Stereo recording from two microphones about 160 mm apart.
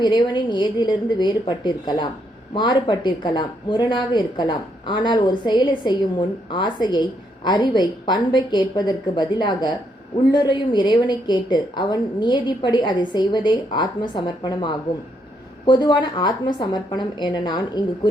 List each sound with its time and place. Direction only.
0.0 s a woman's voice: 30° left (ahead or behind)